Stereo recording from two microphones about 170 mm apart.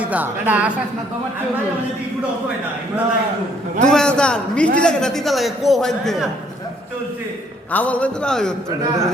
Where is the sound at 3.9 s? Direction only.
5° left (ahead or behind).